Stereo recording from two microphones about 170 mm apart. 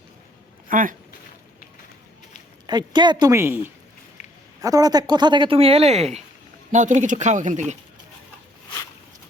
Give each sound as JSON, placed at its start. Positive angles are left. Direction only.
{"t": 0.7, "sound": "speech", "side_deg": -50}
{"t": 2.6, "sound": "speech", "side_deg": -25}
{"t": 4.2, "sound": "a sound", "side_deg": 40}
{"t": 4.6, "sound": "speech", "side_deg": -20}